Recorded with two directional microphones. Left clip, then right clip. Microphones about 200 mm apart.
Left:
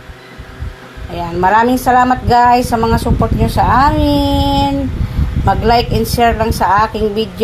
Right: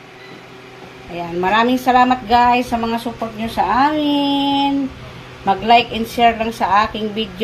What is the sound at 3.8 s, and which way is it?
Speech, 30° left (ahead or behind).